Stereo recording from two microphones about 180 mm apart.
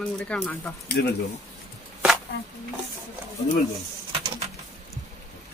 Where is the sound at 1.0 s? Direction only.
65° left (ahead or behind).